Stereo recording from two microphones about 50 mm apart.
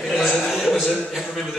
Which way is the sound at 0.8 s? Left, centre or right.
Centre.